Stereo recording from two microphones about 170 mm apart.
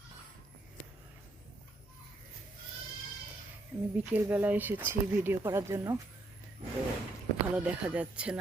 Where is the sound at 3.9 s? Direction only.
10° right (ahead or behind).